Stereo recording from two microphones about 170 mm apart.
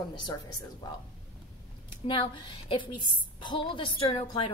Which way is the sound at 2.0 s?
30° left (ahead or behind).